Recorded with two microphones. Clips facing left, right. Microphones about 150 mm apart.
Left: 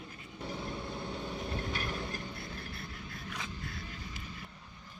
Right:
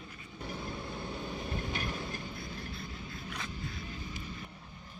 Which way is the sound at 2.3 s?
60° left (ahead or behind).